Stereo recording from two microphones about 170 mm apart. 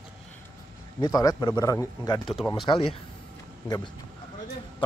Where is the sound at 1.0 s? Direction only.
25° left (ahead or behind).